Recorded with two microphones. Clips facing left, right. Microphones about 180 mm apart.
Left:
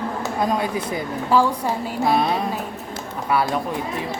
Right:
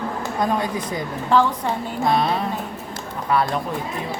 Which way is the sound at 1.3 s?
5° left (ahead or behind).